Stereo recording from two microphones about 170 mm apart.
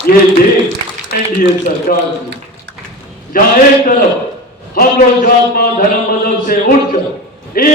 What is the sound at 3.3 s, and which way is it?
Speech, 55° left (ahead or behind).